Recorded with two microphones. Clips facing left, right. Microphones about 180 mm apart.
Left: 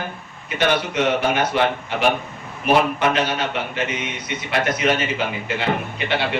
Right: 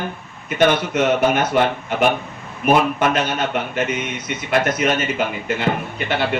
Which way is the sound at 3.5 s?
45° right (ahead or behind).